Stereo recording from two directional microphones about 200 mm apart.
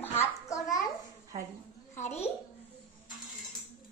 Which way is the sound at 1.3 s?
30° right (ahead or behind).